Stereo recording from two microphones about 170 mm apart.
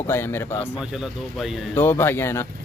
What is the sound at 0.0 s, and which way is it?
Speech, 15° left (ahead or behind).